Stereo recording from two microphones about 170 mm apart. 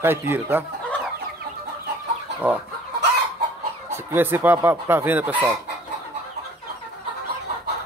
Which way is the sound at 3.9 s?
15° right (ahead or behind).